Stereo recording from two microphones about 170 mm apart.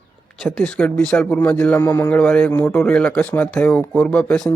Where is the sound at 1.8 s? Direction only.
20° left (ahead or behind).